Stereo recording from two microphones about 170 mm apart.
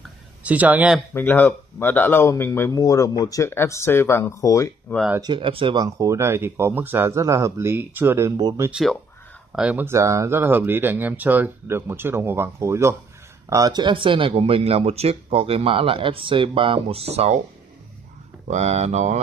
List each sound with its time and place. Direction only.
0.4 s speech: 10° right (ahead or behind)
1.1 s speech: 10° left (ahead or behind)
5.2 s speech: 30° right (ahead or behind)
8.6 s speech: 5° right (ahead or behind); by 17.4 s 40° right (ahead or behind)
18.5 s speech: 40° right (ahead or behind)